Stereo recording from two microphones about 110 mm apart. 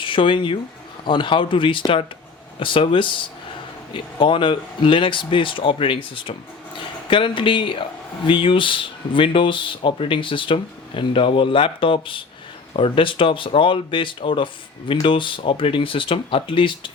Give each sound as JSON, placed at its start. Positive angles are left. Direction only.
{"t": 0.0, "sound": "speech", "side_deg": 50}